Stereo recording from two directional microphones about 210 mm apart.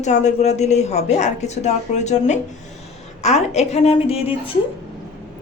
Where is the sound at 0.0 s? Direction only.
35° left (ahead or behind).